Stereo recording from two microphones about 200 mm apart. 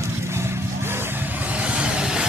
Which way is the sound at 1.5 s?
5° right (ahead or behind).